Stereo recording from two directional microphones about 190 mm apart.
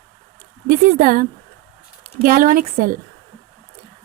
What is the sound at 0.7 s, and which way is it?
A woman's voice, 50° right (ahead or behind).